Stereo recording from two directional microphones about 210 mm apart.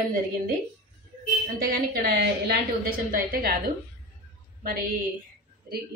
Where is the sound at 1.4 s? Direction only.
45° right (ahead or behind).